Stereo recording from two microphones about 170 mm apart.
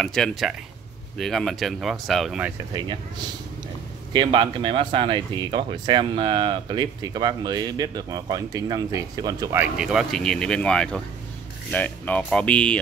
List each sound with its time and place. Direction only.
0.0 s speech: 5° left (ahead or behind)
2.7 s speech: 25° right (ahead or behind)
9.6 s speech: 5° right (ahead or behind)